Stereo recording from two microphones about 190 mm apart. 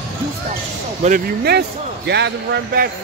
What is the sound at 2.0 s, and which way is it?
Speech, 65° right (ahead or behind).